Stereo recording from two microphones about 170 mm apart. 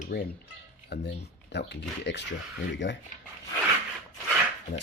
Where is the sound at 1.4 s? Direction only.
90° left.